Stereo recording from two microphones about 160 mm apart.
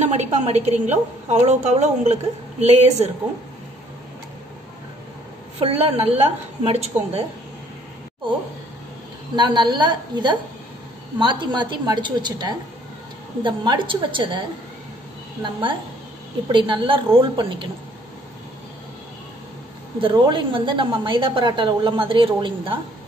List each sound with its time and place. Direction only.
0.0 s a woman's voice: 45° right (ahead or behind)
5.6 s a woman's voice: 35° right (ahead or behind)
9.3 s a woman's voice: 30° right (ahead or behind)
16.5 s a woman's voice: 30° right (ahead or behind)
20.0 s a woman's voice: 30° right (ahead or behind)